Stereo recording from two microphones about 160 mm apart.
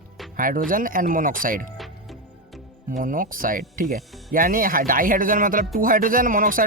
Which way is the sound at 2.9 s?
60° right (ahead or behind).